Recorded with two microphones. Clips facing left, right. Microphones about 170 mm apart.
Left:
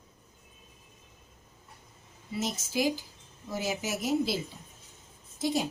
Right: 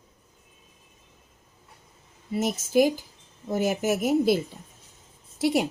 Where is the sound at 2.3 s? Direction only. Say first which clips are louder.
Right 9 dB; 55° right (ahead or behind).